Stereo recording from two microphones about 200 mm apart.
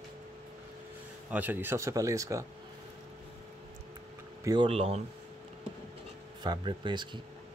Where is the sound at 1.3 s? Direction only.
10° right (ahead or behind).